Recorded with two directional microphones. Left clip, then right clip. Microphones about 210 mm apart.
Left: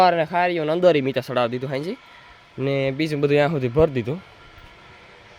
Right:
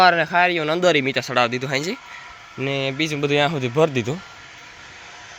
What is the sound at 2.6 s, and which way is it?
Speech, 30° left (ahead or behind).